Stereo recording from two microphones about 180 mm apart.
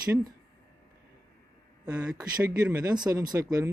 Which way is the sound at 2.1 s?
15° right (ahead or behind).